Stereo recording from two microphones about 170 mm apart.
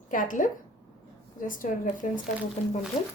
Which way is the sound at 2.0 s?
50° left (ahead or behind).